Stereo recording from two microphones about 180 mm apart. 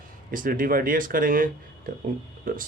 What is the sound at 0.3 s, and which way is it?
Speech, 50° right (ahead or behind).